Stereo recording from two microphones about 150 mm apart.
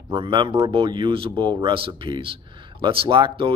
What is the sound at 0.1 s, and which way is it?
Speech, 35° right (ahead or behind).